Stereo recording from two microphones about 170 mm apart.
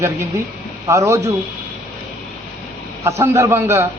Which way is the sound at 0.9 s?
15° right (ahead or behind).